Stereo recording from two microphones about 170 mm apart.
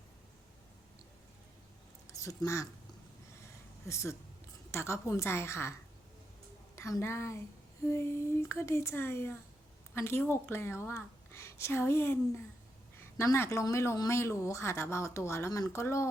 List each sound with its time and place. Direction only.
2.1 s speech: 20° left (ahead or behind)
3.4 s a sound: 15° left (ahead or behind)
4.7 s speech: 15° left (ahead or behind)
6.7 s a woman's voice: 15° left (ahead or behind)